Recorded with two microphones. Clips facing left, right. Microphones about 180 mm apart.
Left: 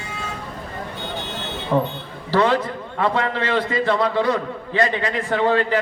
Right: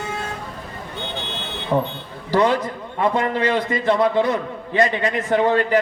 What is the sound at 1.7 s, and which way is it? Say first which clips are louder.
A man's voice: even; 15° right (ahead or behind).